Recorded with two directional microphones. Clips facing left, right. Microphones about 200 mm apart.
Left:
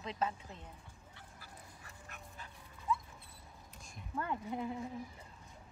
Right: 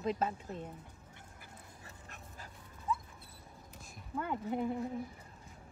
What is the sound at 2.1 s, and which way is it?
Dog, 35° right (ahead or behind).